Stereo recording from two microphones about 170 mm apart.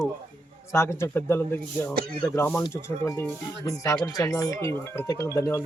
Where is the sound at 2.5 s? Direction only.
10° left (ahead or behind).